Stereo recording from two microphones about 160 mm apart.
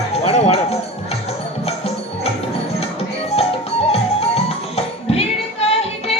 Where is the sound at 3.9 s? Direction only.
40° left (ahead or behind).